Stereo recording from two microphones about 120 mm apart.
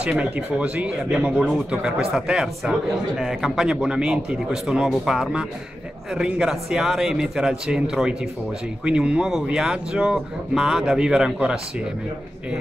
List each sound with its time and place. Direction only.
0.0 s speech: 10° right (ahead or behind)